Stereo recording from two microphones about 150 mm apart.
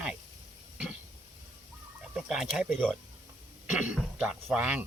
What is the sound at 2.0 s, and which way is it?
Speech, 5° right (ahead or behind).